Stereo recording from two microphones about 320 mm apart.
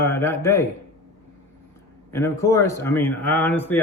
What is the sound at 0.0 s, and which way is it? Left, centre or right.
Speech, centre.